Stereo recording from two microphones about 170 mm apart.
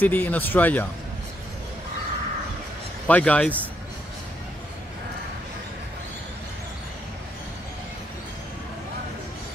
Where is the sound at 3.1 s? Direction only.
10° left (ahead or behind).